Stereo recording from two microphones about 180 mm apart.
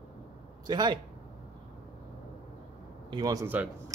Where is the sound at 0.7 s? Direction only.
25° right (ahead or behind).